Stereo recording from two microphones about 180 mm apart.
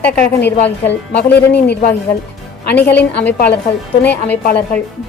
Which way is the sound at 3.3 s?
65° left (ahead or behind).